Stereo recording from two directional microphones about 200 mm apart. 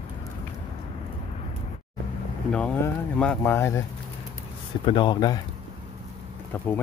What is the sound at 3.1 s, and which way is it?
Speech, 5° left (ahead or behind).